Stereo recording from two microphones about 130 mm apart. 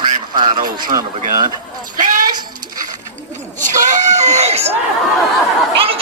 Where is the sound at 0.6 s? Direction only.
90° right.